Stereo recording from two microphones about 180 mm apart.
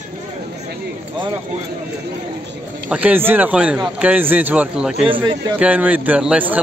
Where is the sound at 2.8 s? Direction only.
10° right (ahead or behind).